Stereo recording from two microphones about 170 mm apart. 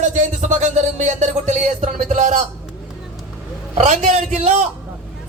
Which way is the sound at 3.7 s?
45° right (ahead or behind).